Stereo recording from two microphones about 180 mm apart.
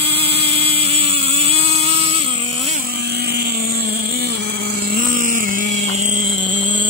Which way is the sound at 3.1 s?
60° right (ahead or behind).